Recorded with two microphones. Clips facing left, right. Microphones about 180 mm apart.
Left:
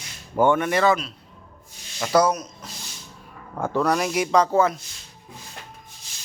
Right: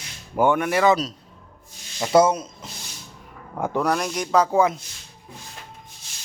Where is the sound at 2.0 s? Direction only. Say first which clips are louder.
Right 2 dB; 25° right (ahead or behind).